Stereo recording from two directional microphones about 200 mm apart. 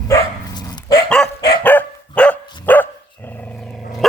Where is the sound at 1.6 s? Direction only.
10° left (ahead or behind).